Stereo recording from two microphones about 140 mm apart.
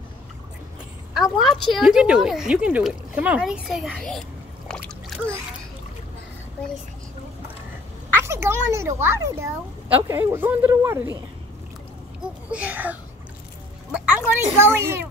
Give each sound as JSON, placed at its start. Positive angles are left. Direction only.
{"t": 1.1, "sound": "speech", "side_deg": 0}
{"t": 8.2, "sound": "a child's voice", "side_deg": -20}
{"t": 12.2, "sound": "a sound", "side_deg": -10}
{"t": 13.9, "sound": "music", "side_deg": -10}
{"t": 14.6, "sound": "a woman's voice", "side_deg": -15}